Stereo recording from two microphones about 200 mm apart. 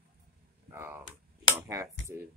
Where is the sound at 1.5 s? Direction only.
15° right (ahead or behind).